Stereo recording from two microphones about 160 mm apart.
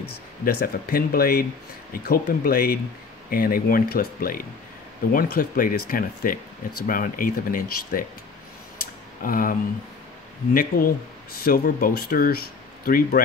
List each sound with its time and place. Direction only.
0.5 s speech: 70° left (ahead or behind)
9.2 s speech: 60° left (ahead or behind)